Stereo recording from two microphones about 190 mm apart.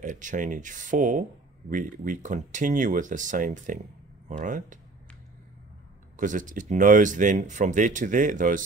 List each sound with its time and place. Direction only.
0.0 s speech: 40° right (ahead or behind)
6.1 s speech: 40° right (ahead or behind)